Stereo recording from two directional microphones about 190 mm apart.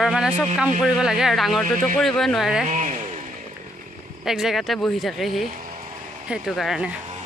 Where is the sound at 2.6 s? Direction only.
40° right (ahead or behind).